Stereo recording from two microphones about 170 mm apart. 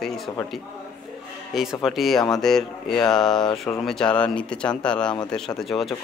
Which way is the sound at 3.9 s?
5° left (ahead or behind).